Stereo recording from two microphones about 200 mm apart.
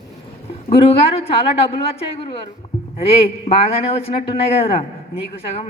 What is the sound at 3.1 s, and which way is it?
A man's voice, 30° left (ahead or behind).